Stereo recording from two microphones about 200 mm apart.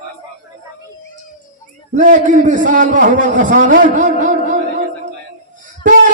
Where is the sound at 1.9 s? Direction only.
40° right (ahead or behind).